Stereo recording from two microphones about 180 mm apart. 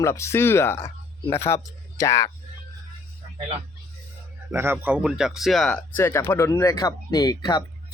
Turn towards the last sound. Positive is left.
turn(degrees=20)  # may be behind; listen again after turning